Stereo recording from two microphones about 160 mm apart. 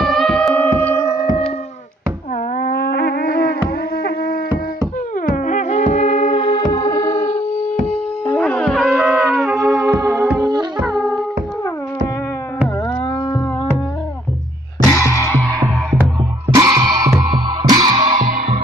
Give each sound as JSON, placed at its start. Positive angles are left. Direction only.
{"t": 0.0, "sound": "music", "side_deg": 0}
{"t": 2.5, "sound": "a sound", "side_deg": 65}
{"t": 5.2, "sound": "music", "side_deg": 55}
{"t": 8.3, "sound": "music", "side_deg": 10}
{"t": 9.8, "sound": "music", "side_deg": -20}
{"t": 10.8, "sound": "music", "side_deg": 0}
{"t": 16.5, "sound": "music", "side_deg": -25}
{"t": 18.3, "sound": "music", "side_deg": -45}